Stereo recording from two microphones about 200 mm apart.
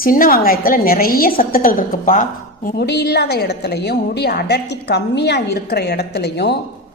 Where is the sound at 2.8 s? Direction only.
55° left (ahead or behind).